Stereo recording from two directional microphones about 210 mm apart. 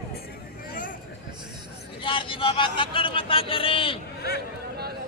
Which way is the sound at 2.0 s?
25° left (ahead or behind).